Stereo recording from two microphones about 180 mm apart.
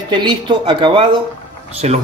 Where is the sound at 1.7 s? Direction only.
35° right (ahead or behind).